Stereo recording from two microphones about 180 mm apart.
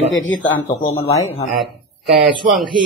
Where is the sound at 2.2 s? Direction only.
Centre (ahead or behind).